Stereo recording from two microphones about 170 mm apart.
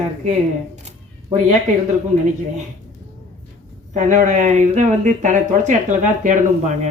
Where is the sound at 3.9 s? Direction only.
50° right (ahead or behind).